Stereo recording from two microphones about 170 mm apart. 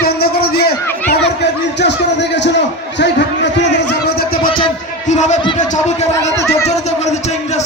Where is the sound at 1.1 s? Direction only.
90° left; by 4.5 s 60° left (ahead or behind).